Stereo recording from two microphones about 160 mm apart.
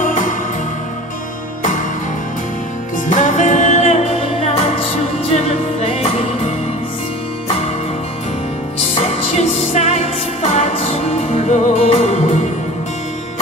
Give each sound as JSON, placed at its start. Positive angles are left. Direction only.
{"t": 0.0, "sound": "music", "side_deg": 50}
{"t": 3.1, "sound": "music", "side_deg": 50}
{"t": 5.3, "sound": "music", "side_deg": 40}
{"t": 9.0, "sound": "music", "side_deg": 45}